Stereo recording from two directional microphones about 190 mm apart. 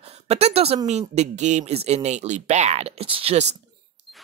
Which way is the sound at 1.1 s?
35° right (ahead or behind).